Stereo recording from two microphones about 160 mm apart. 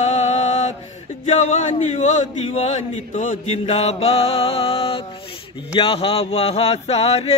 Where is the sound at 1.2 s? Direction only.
45° left (ahead or behind).